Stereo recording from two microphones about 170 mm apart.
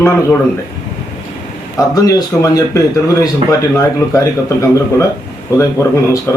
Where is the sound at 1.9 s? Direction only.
20° left (ahead or behind).